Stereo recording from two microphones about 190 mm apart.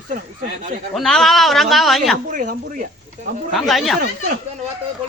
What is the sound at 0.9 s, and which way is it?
A man's voice, centre (ahead or behind).